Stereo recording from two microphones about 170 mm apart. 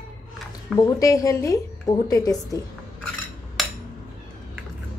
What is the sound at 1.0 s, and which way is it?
A woman's voice, 20° left (ahead or behind).